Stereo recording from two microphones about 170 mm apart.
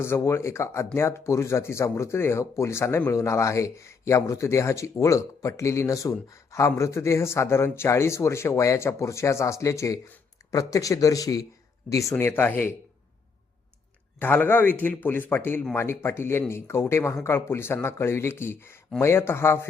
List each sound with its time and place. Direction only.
0.0 s speech: 15° left (ahead or behind)
14.2 s speech: 10° left (ahead or behind)